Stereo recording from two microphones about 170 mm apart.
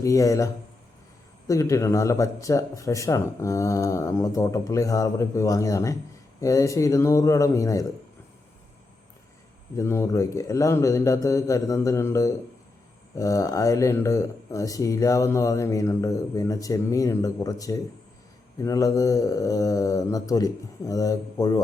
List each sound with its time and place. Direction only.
0.0 s speech: 20° left (ahead or behind)
9.7 s speech: 15° left (ahead or behind)